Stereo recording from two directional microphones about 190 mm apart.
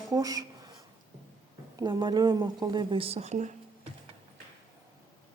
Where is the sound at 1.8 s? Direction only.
20° right (ahead or behind); by 3.6 s 40° right (ahead or behind).